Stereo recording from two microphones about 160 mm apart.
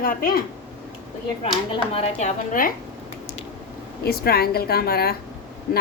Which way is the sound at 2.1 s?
50° left (ahead or behind).